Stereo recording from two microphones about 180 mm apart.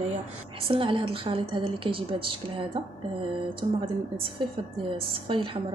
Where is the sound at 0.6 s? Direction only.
30° right (ahead or behind).